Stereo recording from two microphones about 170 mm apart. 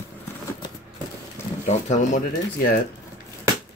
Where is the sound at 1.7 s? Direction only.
45° left (ahead or behind).